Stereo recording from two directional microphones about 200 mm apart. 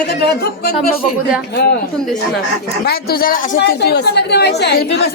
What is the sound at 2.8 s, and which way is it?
Speech, 50° left (ahead or behind).